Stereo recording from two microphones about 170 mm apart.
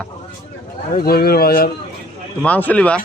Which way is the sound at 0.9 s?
65° left (ahead or behind).